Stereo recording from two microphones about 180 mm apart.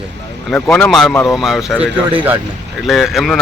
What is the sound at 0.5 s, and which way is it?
Speech, 5° left (ahead or behind).